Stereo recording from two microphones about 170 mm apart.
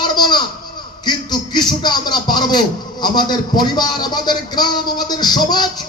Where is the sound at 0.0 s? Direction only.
25° left (ahead or behind).